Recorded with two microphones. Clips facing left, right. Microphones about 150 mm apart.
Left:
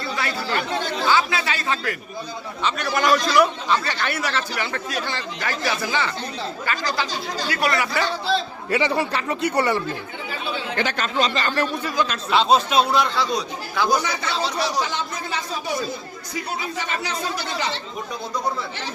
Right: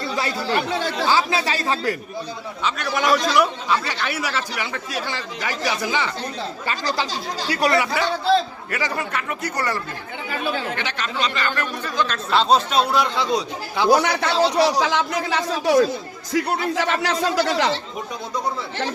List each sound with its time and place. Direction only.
1.0 s speech: 35° right (ahead or behind)
2.6 s a man's voice: centre (ahead or behind)
6.7 s speech: 30° right (ahead or behind)
8.7 s speech: 25° left (ahead or behind)
10.8 s speech: 40° left (ahead or behind)
11.9 s speech: 10° left (ahead or behind)
13.1 s speech: 25° right (ahead or behind)
13.9 s speech: 70° right (ahead or behind); by 15.9 s 90° right
16.3 s speech: 65° right (ahead or behind); by 17.7 s 90° right